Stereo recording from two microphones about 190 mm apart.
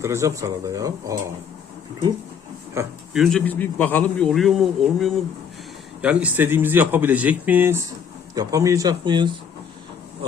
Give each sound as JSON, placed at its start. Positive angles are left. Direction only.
{"t": 0.0, "sound": "speech", "side_deg": -15}
{"t": 3.1, "sound": "a man's voice", "side_deg": 0}